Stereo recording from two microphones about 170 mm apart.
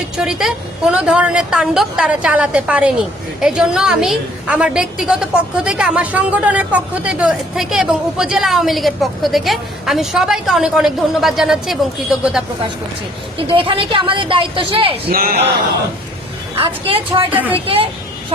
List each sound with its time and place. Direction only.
0.2 s a woman's voice: 5° right (ahead or behind)
13.5 s speech: 30° right (ahead or behind)
15.1 s speech: 60° right (ahead or behind)
16.6 s speech: 35° right (ahead or behind)
17.3 s a woman's voice: 10° right (ahead or behind)